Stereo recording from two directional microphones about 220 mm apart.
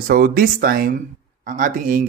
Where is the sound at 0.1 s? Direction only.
40° right (ahead or behind).